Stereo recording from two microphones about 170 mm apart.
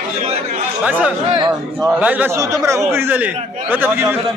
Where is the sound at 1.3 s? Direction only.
30° right (ahead or behind).